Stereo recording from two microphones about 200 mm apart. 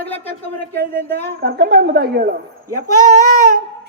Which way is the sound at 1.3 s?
50° right (ahead or behind).